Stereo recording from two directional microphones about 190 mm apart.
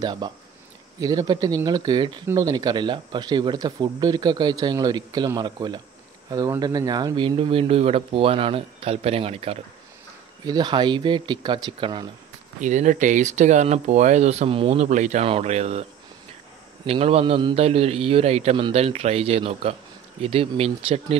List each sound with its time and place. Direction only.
0.0 s speech: 20° right (ahead or behind)
10.4 s speech: 20° right (ahead or behind)
12.5 s speech: 40° right (ahead or behind)